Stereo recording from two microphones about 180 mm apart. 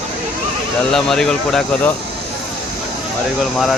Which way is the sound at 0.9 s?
5° left (ahead or behind).